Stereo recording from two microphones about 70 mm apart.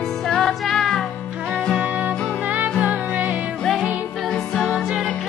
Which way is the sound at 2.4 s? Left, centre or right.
Right.